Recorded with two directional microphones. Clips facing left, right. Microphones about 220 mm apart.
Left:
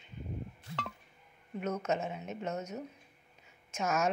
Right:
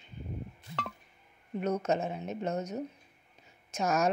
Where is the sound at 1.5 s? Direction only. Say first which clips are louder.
Right 4 dB; 35° right (ahead or behind).